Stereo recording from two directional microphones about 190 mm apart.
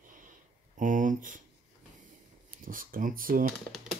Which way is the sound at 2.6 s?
45° right (ahead or behind).